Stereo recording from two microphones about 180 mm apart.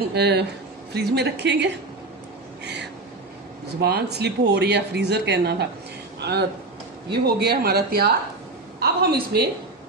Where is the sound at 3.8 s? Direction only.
65° right (ahead or behind).